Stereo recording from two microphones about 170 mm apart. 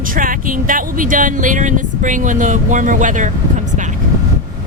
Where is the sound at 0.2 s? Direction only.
55° right (ahead or behind).